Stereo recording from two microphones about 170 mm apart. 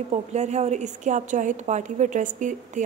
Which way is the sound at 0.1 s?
40° right (ahead or behind).